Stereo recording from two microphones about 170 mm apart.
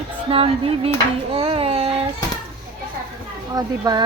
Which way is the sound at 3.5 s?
20° right (ahead or behind).